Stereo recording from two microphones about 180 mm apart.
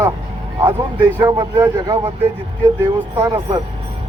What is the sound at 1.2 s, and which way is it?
Speech, 20° right (ahead or behind).